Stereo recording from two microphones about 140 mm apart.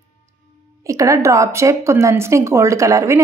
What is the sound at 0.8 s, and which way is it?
A woman's voice, 25° right (ahead or behind).